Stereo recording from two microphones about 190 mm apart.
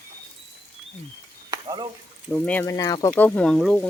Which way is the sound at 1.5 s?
20° right (ahead or behind).